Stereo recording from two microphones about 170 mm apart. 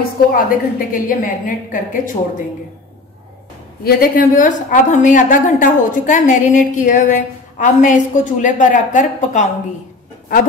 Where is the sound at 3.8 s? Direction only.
55° left (ahead or behind).